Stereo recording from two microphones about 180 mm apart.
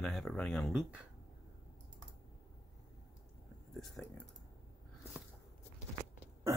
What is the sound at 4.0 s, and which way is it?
Speech, 5° left (ahead or behind).